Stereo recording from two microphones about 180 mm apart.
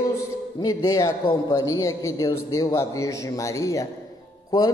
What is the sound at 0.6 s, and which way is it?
A man's voice, 20° left (ahead or behind).